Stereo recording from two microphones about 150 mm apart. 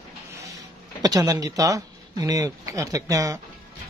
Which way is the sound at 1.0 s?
25° right (ahead or behind).